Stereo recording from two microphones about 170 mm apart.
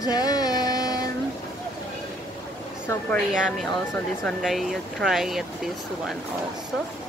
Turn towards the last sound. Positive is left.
turn(degrees=0)  # may be behind; listen again after turning